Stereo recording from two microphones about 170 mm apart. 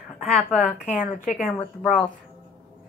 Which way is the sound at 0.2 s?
Centre (ahead or behind).